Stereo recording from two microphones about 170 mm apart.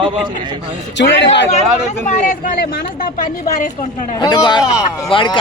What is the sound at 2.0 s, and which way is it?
Speech, 55° left (ahead or behind).